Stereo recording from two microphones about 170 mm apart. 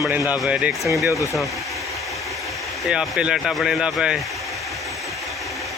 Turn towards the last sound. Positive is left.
turn(degrees=0)  # may be behind; listen again after turning